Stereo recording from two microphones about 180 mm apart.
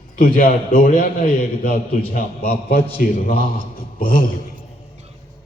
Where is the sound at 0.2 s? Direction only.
50° left (ahead or behind).